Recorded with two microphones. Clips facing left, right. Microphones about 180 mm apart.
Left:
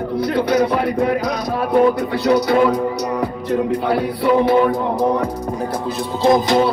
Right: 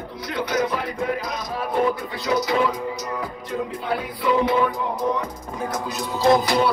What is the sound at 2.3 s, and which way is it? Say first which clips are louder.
Music: left 6 dB; 65° left (ahead or behind).